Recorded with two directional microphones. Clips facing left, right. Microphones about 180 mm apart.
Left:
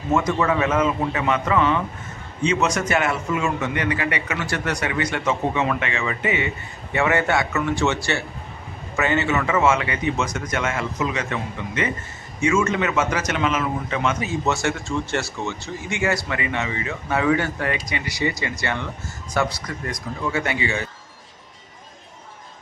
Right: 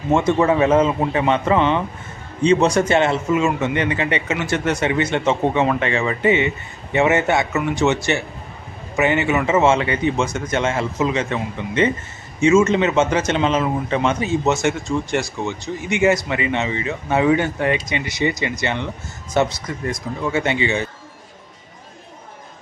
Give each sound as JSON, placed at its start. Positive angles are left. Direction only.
{"t": 0.1, "sound": "a man's voice", "side_deg": -25}